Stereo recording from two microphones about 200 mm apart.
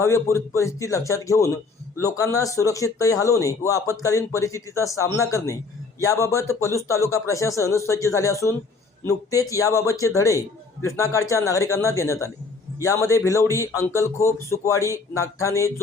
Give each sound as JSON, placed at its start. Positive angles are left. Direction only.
{"t": 0.0, "sound": "speech", "side_deg": 15}